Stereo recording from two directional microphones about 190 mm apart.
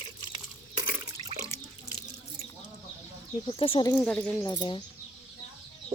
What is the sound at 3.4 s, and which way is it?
Speech, 30° left (ahead or behind).